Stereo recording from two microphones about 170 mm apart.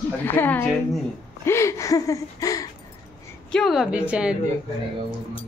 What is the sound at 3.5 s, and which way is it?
Speech, centre (ahead or behind).